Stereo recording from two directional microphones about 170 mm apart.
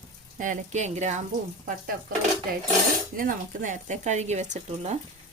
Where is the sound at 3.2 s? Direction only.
50° right (ahead or behind).